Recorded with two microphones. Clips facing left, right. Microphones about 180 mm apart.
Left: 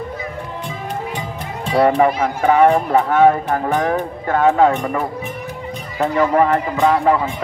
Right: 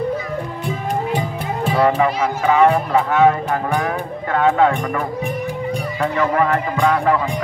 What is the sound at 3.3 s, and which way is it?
Speech, 35° left (ahead or behind).